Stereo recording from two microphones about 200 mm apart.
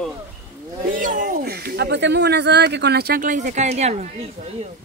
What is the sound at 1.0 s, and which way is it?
Speech, 40° right (ahead or behind).